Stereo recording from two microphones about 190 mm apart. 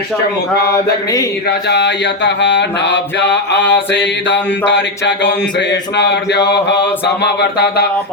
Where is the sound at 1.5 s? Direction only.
60° left (ahead or behind).